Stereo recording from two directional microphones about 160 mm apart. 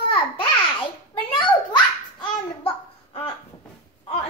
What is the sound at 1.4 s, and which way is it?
Babbling, 30° left (ahead or behind).